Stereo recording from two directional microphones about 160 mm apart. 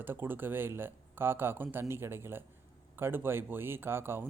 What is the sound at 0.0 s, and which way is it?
Speech, 15° right (ahead or behind).